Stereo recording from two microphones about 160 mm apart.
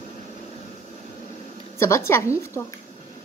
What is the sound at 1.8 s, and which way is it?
Speech, 15° left (ahead or behind).